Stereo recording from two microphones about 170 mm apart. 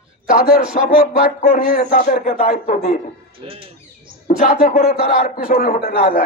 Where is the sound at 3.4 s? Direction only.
30° right (ahead or behind).